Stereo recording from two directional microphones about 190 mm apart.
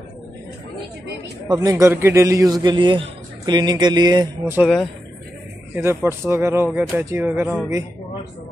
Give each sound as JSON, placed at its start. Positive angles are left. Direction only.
{"t": 1.5, "sound": "a man's voice", "side_deg": -15}
{"t": 4.6, "sound": "speech", "side_deg": 0}
{"t": 5.8, "sound": "speech", "side_deg": -15}